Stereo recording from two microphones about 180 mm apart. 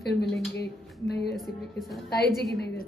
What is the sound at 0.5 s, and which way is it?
Speech, 65° left (ahead or behind).